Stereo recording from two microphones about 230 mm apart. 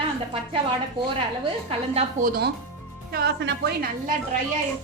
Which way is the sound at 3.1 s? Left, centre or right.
Right.